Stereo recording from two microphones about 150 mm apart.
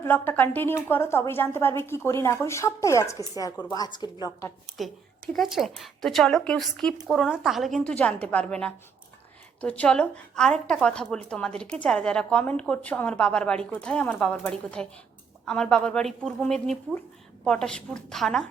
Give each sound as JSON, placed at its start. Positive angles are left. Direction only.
{"t": 0.0, "sound": "a woman's voice", "side_deg": 15}
{"t": 4.8, "sound": "a woman's voice", "side_deg": 0}